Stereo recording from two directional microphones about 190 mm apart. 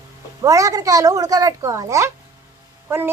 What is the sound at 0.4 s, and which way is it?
Speech, 20° right (ahead or behind).